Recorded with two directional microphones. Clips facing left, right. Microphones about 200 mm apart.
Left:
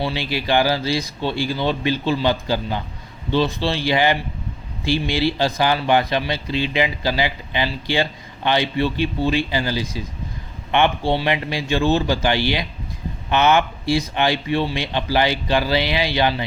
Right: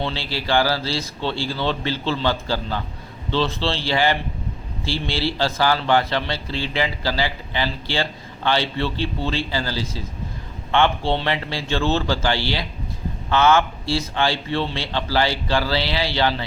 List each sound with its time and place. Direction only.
0.0 s speech: 15° left (ahead or behind)